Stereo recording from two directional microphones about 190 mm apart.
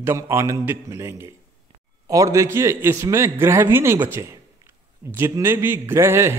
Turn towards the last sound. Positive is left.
turn(degrees=-15)  # may be behind; listen again after turning